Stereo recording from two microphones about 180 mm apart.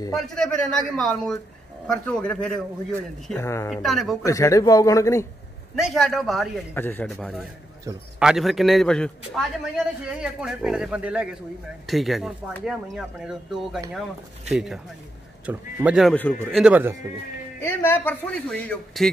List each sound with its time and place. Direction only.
0.1 s a man's voice: centre (ahead or behind)
3.7 s speech: centre (ahead or behind)
4.2 s a man's voice: 15° left (ahead or behind)
5.8 s speech: centre (ahead or behind)
6.7 s a man's voice: 10° left (ahead or behind)
16.2 s a man's voice: 10° left (ahead or behind)
16.6 s speech: 10° right (ahead or behind)
17.6 s a man's voice: 10° left (ahead or behind)